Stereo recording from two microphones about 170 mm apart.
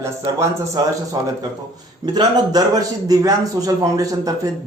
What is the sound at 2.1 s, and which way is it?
A man's voice, 20° right (ahead or behind).